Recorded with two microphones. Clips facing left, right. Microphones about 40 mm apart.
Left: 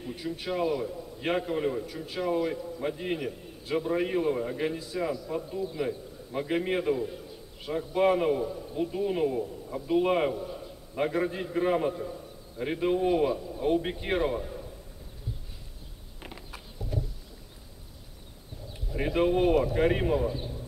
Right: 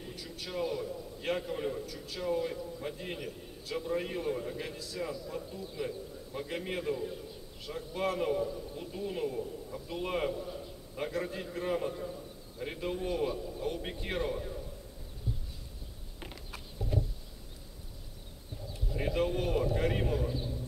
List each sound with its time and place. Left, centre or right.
0.1 s a man's voice: left
10.4 s a sound: centre
11.0 s a man's voice: left
11.9 s a man's voice: centre
12.5 s a man's voice: left
14.4 s a sound: centre
18.9 s a man's voice: left